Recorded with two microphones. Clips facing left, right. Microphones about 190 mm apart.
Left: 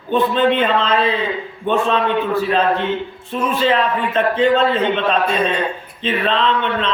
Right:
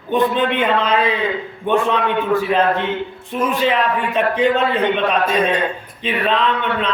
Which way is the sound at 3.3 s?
15° right (ahead or behind).